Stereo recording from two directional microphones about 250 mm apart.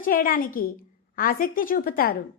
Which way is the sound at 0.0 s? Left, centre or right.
Left.